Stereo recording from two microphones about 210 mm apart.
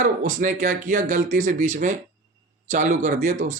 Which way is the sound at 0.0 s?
40° right (ahead or behind).